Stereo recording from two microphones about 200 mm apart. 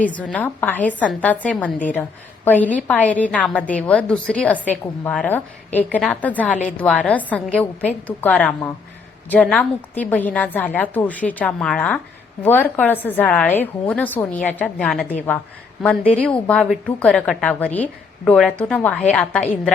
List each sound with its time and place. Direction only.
0.0 s a woman's voice: 5° left (ahead or behind)